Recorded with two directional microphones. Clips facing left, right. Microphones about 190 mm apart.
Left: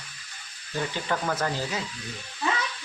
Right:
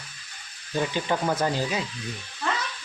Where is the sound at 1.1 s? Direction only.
15° right (ahead or behind).